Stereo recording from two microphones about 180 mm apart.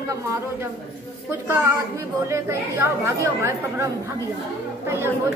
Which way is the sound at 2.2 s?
15° right (ahead or behind).